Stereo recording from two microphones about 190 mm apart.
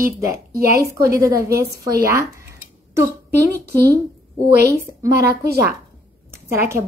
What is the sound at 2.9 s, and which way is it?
Speech, 15° right (ahead or behind).